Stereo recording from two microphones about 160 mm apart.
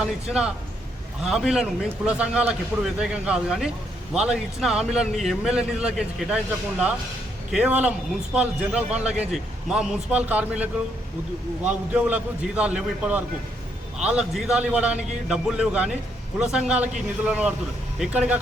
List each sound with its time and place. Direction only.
0.0 s a man's voice: 5° right (ahead or behind)